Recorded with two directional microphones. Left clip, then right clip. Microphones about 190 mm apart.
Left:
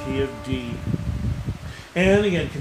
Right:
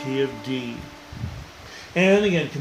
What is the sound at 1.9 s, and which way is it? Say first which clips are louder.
Speech: right 1 dB; 5° right (ahead or behind).